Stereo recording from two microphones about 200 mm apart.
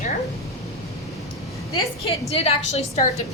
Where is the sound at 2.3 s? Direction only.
30° left (ahead or behind).